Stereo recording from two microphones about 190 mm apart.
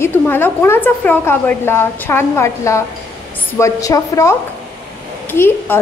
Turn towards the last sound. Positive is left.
turn(degrees=10)  # may be behind; listen again after turning